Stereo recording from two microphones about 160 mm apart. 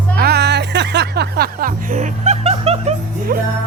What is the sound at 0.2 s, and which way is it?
Music, 85° right.